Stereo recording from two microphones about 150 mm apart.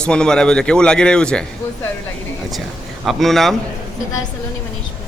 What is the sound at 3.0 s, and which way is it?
Speech, centre (ahead or behind).